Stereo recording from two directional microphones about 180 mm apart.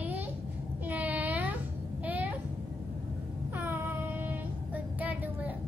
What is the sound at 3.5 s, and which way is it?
Child singing, 10° right (ahead or behind).